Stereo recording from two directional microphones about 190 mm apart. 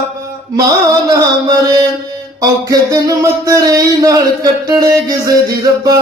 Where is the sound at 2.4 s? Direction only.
20° right (ahead or behind).